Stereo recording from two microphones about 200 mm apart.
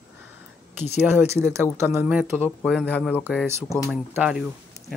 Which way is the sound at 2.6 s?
5° left (ahead or behind).